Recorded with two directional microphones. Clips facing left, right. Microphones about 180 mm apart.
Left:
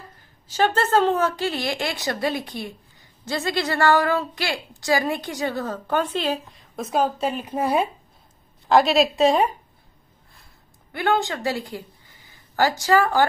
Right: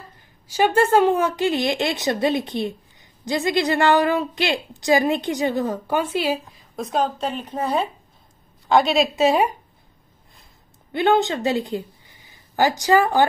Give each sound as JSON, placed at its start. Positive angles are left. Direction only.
{"t": 0.5, "sound": "a woman's voice", "side_deg": -10}
{"t": 10.9, "sound": "speech", "side_deg": -20}